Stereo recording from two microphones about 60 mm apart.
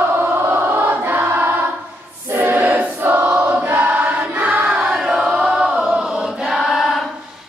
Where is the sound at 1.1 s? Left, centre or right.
Right.